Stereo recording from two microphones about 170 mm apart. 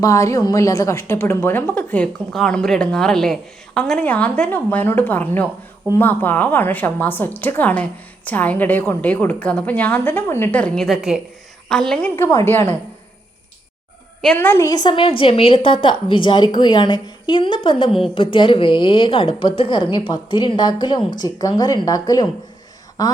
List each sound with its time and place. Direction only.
0.0 s a woman's voice: 20° left (ahead or behind); by 12.1 s 5° left (ahead or behind)
12.1 s a woman's voice: 15° left (ahead or behind)
14.2 s a woman's voice: 10° left (ahead or behind)